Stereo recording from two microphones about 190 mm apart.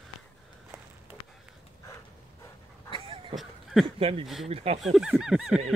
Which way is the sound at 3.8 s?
30° right (ahead or behind).